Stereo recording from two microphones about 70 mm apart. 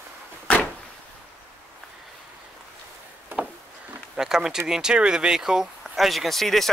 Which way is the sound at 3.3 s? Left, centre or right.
Right.